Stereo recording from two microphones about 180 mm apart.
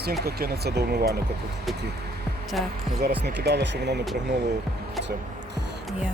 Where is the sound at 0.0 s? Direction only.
60° right (ahead or behind).